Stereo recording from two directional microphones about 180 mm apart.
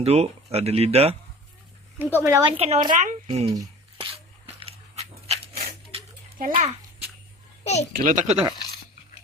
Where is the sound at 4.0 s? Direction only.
35° right (ahead or behind).